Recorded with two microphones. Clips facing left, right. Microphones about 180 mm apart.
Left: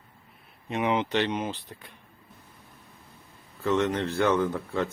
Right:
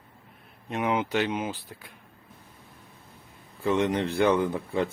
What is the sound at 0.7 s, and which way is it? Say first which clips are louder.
Speech: left 1 dB; centre (ahead or behind).